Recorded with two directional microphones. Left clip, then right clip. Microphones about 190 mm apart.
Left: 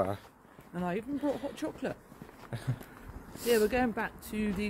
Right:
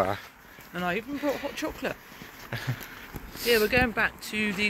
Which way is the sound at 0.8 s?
30° left (ahead or behind).